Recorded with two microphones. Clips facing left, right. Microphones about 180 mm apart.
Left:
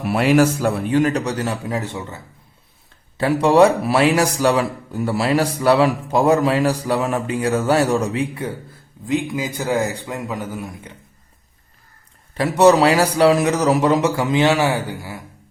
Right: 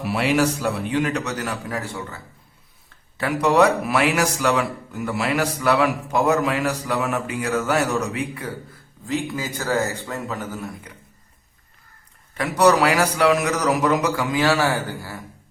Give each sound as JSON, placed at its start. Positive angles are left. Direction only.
{"t": 0.0, "sound": "a man's voice", "side_deg": 50}
{"t": 3.4, "sound": "a man's voice", "side_deg": 30}
{"t": 9.0, "sound": "a man's voice", "side_deg": 15}
{"t": 12.4, "sound": "a man's voice", "side_deg": 25}